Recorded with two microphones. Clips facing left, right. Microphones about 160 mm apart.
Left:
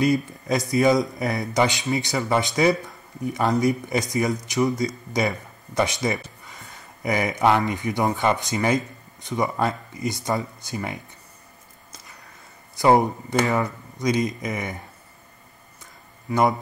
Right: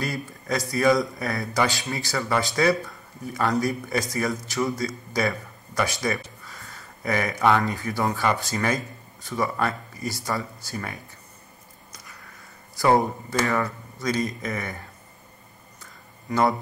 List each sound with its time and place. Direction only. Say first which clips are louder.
0.0 s speech: left 9 dB; 20° left (ahead or behind)
12.7 s speech: left 2 dB; 20° left (ahead or behind)